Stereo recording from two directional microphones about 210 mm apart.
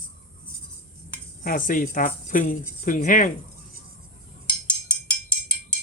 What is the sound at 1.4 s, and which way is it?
Speech, 40° left (ahead or behind).